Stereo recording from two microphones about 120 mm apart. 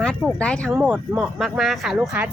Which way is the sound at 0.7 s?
15° right (ahead or behind).